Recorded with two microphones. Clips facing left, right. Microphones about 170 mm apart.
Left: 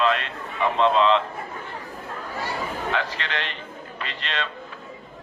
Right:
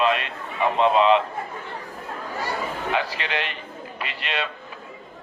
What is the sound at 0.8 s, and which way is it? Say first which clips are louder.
Speech: right 1 dB; 15° right (ahead or behind).